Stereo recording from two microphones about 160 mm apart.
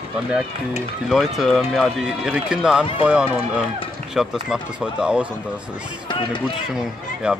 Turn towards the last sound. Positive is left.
turn(degrees=-5)  # may be behind; listen again after turning